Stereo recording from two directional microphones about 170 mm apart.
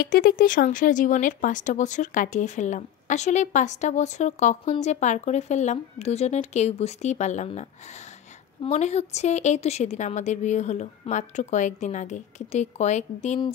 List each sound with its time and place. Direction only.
0.0 s a woman's voice: 60° left (ahead or behind); by 13.4 s 40° left (ahead or behind)